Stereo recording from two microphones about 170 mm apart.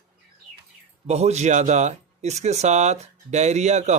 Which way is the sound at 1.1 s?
40° right (ahead or behind).